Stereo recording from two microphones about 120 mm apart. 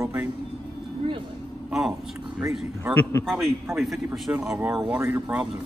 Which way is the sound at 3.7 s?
Centre (ahead or behind).